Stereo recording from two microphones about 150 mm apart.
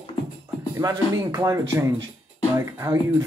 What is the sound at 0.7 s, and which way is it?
Speech, 20° right (ahead or behind).